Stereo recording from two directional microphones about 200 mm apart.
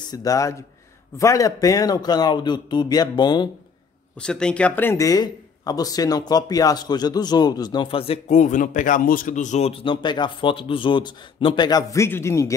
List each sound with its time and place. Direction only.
0.1 s a man's voice: 15° left (ahead or behind)
4.2 s speech: 5° left (ahead or behind)